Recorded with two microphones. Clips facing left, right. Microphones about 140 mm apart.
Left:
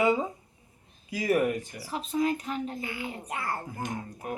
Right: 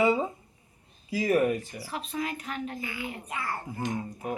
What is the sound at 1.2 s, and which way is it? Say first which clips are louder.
Speech: right 1 dB; 10° left (ahead or behind).